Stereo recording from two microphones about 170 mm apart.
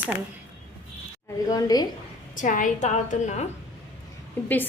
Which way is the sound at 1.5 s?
20° left (ahead or behind).